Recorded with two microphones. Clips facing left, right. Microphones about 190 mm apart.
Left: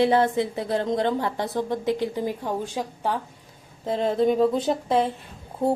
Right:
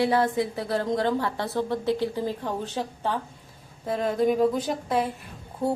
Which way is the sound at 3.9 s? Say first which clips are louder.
Left 2 dB; 25° left (ahead or behind).